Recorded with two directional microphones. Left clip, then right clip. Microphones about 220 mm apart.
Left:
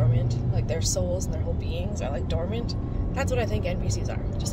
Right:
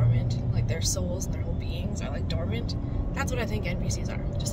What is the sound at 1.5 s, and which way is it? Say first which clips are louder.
Speech: left 4 dB; 40° right (ahead or behind).